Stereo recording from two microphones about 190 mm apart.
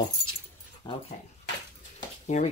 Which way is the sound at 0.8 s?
25° left (ahead or behind).